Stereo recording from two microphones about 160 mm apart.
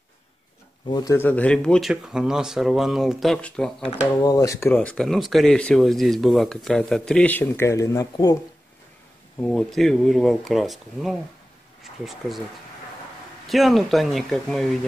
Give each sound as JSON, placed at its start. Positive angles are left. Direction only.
{"t": 0.8, "sound": "speech", "side_deg": 25}
{"t": 1.1, "sound": "speech", "side_deg": 10}
{"t": 4.2, "sound": "speech", "side_deg": 20}
{"t": 9.4, "sound": "speech", "side_deg": 5}
{"t": 13.5, "sound": "speech", "side_deg": 0}